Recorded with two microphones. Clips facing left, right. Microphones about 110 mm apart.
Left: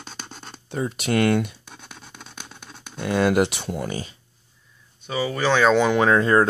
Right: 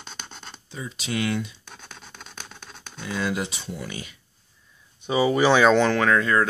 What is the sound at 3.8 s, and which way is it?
Speech, 35° left (ahead or behind).